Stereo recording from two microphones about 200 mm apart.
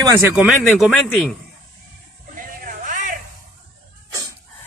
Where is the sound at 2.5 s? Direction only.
40° right (ahead or behind).